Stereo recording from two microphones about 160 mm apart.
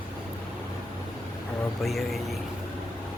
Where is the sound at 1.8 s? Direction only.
Centre (ahead or behind).